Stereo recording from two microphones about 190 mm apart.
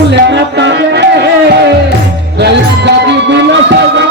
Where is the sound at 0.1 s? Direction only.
70° right (ahead or behind).